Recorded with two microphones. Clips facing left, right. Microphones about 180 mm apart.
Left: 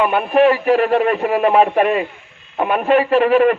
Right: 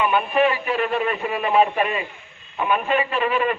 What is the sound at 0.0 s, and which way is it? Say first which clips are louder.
A man's voice: left 6 dB; 70° left (ahead or behind).